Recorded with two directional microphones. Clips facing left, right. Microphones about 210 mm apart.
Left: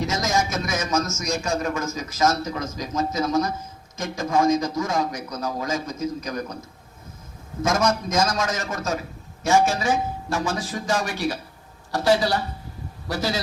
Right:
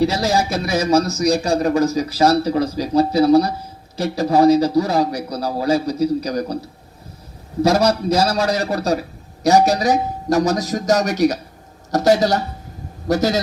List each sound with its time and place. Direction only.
0.0 s speech: 35° right (ahead or behind)
7.6 s speech: 35° right (ahead or behind)